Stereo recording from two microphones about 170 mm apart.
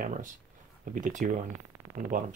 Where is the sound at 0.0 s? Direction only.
55° right (ahead or behind).